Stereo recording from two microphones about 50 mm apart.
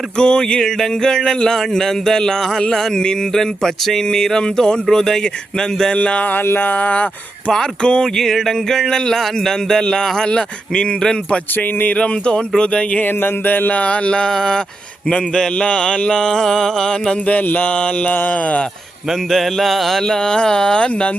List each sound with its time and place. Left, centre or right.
0.2 s speech: centre
6.0 s speech: left
6.3 s a sound: left
6.7 s speech: left
13.0 s speech: left; by 17.2 s centre
17.2 s speech: left
19.3 s a sound: centre
20.2 s speech: centre